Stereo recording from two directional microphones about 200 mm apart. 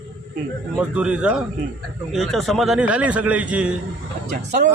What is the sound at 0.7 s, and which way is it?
Speech, 5° right (ahead or behind).